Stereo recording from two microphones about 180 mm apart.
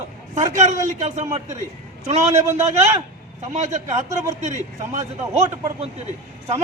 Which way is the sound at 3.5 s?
40° right (ahead or behind).